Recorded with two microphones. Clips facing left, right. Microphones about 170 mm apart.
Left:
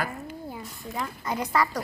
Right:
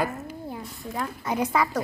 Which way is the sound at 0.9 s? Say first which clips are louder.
Right 3 dB; 5° right (ahead or behind).